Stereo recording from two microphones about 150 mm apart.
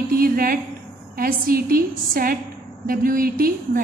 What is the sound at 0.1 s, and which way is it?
A woman's voice, 75° right (ahead or behind).